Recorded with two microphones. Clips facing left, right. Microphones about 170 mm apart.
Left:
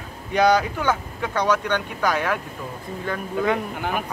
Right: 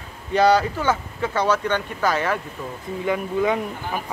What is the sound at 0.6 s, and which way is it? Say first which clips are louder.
Speech: right 1 dB; 5° right (ahead or behind).